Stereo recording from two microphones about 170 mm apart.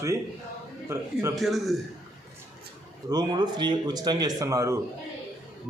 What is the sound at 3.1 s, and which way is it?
Speech, 25° right (ahead or behind).